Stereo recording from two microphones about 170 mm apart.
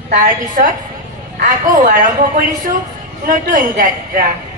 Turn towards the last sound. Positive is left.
turn(degrees=-55)  # may be behind; listen again after turning